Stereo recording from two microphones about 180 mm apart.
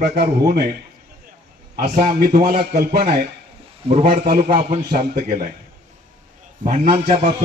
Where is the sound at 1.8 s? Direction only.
45° right (ahead or behind).